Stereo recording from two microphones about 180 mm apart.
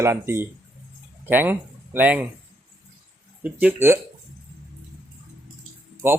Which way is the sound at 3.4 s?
10° right (ahead or behind).